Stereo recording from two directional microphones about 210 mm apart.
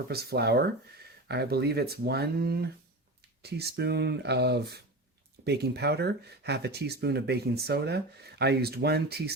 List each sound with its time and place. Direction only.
0.1 s speech: 50° right (ahead or behind)